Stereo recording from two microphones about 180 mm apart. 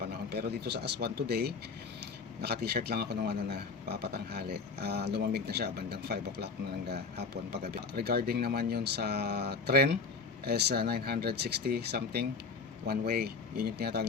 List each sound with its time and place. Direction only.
0.3 s a man's voice: 65° right (ahead or behind)